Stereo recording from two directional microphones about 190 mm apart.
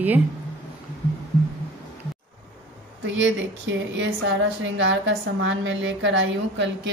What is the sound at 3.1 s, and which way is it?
A woman's voice, 80° right.